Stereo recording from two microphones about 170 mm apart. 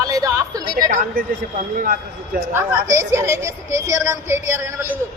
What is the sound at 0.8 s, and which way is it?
Speech, 55° right (ahead or behind).